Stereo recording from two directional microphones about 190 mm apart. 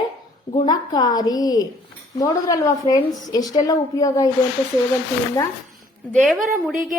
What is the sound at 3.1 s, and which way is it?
Speech, centre (ahead or behind).